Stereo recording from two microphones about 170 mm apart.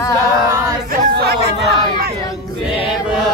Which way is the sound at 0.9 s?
70° right (ahead or behind).